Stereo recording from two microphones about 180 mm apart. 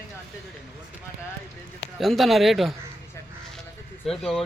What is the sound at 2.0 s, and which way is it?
Speech, centre (ahead or behind).